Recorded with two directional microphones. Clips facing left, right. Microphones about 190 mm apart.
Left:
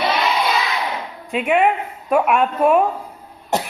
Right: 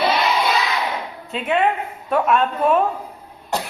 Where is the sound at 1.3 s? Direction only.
15° left (ahead or behind).